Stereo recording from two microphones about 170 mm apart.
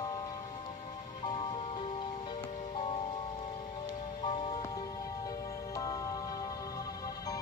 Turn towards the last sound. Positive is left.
turn(degrees=20)  # may be behind; listen again after turning